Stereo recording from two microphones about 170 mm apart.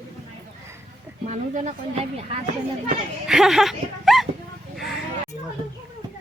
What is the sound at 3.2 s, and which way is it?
Speech, centre (ahead or behind).